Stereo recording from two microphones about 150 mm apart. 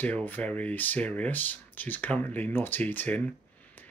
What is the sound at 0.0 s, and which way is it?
Speech, 10° left (ahead or behind).